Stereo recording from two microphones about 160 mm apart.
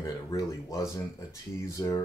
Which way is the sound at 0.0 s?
20° left (ahead or behind).